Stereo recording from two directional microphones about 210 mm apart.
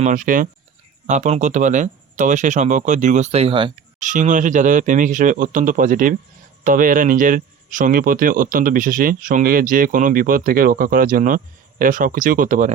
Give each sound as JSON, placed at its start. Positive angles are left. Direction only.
{"t": 0.0, "sound": "speech", "side_deg": -40}
{"t": 4.0, "sound": "speech", "side_deg": -35}